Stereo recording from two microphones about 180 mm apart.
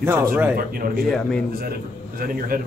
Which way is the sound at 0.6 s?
55° right (ahead or behind).